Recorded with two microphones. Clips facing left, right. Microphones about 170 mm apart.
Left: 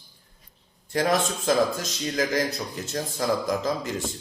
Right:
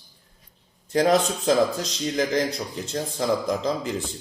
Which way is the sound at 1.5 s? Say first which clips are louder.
Right 2 dB; 30° right (ahead or behind).